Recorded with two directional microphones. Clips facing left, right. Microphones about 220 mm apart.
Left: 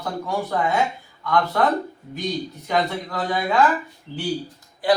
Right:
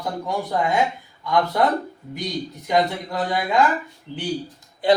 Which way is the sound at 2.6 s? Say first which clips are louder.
Right 3 dB; 15° right (ahead or behind).